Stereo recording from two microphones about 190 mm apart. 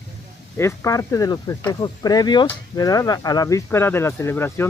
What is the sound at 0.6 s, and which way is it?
Speech, 15° left (ahead or behind).